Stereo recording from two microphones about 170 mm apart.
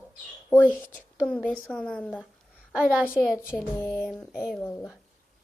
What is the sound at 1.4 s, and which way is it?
Speech, 10° left (ahead or behind).